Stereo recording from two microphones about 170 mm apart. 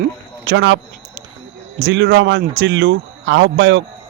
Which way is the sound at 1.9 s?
90° right.